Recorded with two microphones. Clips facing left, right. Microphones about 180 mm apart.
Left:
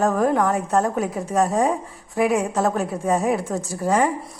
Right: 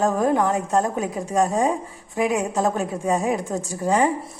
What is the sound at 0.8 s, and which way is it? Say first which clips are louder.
Speech: left 1 dB; 15° right (ahead or behind).